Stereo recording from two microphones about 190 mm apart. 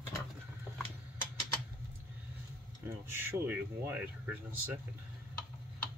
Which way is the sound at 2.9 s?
10° right (ahead or behind).